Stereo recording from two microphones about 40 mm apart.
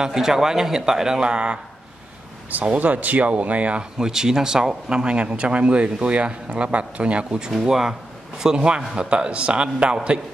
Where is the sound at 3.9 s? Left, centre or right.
Centre.